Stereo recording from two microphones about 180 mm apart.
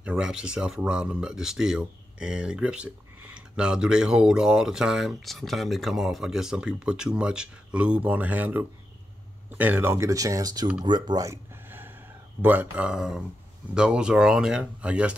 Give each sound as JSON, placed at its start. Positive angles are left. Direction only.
{"t": 0.0, "sound": "speech", "side_deg": -5}